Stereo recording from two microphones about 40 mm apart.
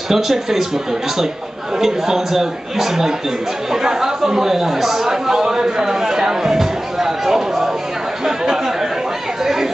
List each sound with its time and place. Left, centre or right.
0.1 s a man's voice: centre
1.8 s a man's voice: centre
8.3 s chatter: centre